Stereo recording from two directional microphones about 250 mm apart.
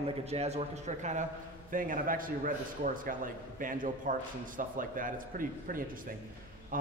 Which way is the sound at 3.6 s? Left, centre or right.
Right.